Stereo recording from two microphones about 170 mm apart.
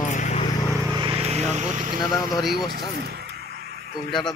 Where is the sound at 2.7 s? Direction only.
70° right (ahead or behind).